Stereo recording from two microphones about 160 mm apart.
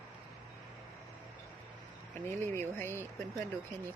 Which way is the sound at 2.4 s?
15° left (ahead or behind).